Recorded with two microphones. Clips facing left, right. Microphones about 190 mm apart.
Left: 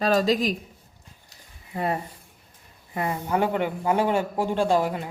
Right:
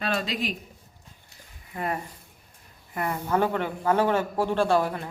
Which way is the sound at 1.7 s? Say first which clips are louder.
Left 3 dB; 30° left (ahead or behind).